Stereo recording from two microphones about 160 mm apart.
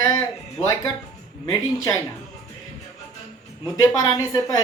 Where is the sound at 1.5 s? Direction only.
20° left (ahead or behind).